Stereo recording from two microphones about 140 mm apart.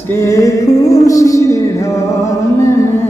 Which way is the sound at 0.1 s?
20° left (ahead or behind).